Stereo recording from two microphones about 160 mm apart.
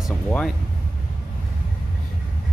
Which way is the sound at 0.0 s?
5° left (ahead or behind).